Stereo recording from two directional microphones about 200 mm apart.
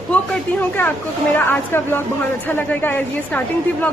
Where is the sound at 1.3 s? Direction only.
10° left (ahead or behind).